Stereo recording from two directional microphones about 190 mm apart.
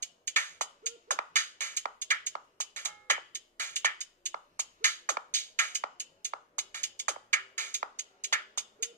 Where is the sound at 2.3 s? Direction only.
40° right (ahead or behind).